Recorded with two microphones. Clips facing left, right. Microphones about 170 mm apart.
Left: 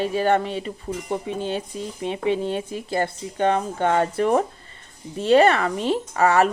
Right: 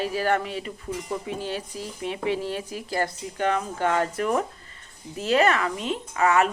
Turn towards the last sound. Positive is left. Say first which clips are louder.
# left 3 dB
turn(degrees=35)  # may be behind; listen again after turning